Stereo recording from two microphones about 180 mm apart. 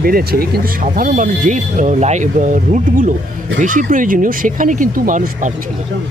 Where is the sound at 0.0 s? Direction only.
55° right (ahead or behind).